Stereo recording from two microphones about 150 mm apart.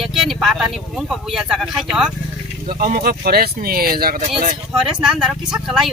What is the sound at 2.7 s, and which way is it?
Speech, 85° right.